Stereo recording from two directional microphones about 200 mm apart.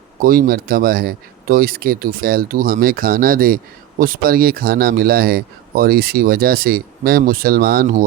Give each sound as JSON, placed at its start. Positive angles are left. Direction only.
{"t": 0.2, "sound": "speech", "side_deg": -45}